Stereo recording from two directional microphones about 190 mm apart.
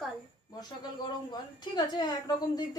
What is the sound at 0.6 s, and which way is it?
A woman's voice, 20° left (ahead or behind).